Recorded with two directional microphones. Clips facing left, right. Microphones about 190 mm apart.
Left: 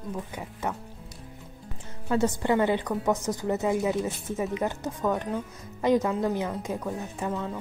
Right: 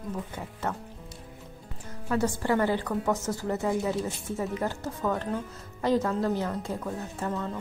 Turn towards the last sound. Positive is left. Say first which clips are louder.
# left 1 dB
turn(degrees=5)  # may be behind; listen again after turning